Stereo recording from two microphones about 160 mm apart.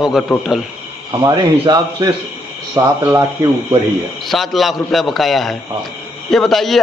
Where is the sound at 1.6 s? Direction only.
25° right (ahead or behind).